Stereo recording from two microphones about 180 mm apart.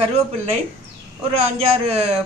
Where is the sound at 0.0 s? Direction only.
35° right (ahead or behind).